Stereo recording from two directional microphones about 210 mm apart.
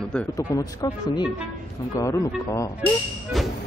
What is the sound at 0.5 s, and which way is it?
Speech, 20° left (ahead or behind).